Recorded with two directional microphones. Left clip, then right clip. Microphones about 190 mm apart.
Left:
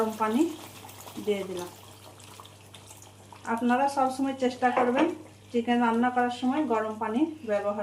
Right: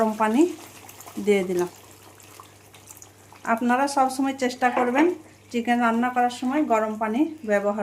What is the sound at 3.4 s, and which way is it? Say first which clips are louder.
A woman's voice: right 4 dB; 60° right (ahead or behind).